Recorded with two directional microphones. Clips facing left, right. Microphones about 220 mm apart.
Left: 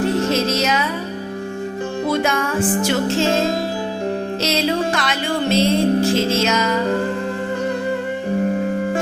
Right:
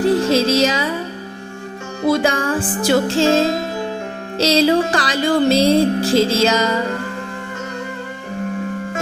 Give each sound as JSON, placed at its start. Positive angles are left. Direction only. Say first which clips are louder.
{"t": 0.0, "sound": "music", "louder": "right 3 dB", "side_deg": -30}
{"t": 2.0, "sound": "music", "louder": "right 5 dB", "side_deg": -30}
{"t": 4.4, "sound": "music", "louder": "right 8 dB", "side_deg": -30}